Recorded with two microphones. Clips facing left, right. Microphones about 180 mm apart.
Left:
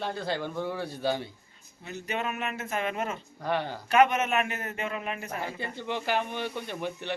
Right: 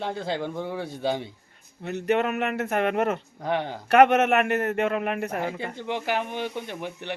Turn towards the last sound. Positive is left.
turn(degrees=-15)  # may be behind; listen again after turning